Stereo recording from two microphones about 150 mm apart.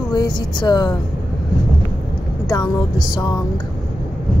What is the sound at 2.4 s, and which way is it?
Speech, 25° left (ahead or behind).